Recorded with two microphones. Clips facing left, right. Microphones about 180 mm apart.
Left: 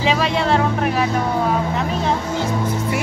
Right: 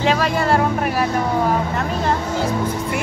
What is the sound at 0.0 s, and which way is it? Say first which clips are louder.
Speech: even; centre (ahead or behind).